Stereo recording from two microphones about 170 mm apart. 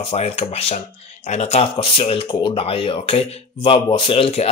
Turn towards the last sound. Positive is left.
turn(degrees=35)  # may be behind; listen again after turning